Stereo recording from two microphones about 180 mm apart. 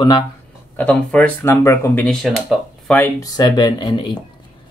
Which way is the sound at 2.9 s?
15° left (ahead or behind).